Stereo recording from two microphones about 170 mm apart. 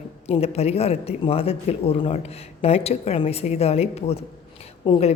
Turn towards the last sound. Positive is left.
turn(degrees=35)  # may be behind; listen again after turning